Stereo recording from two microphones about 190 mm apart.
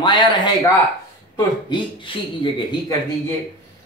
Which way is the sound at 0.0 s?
20° left (ahead or behind).